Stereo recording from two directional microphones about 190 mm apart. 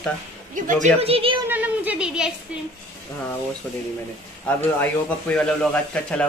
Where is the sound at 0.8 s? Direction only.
30° right (ahead or behind).